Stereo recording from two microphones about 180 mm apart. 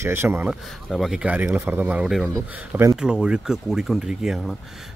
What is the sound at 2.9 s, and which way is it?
Speech, 5° right (ahead or behind).